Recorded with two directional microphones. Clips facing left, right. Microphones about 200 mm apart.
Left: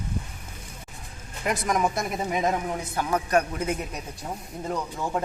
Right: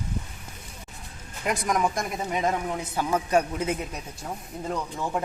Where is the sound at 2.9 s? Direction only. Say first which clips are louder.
Even; 5° right (ahead or behind).